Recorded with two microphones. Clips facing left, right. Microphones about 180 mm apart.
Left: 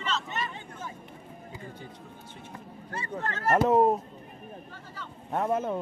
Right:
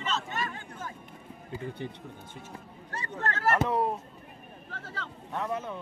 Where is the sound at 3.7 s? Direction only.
45° left (ahead or behind).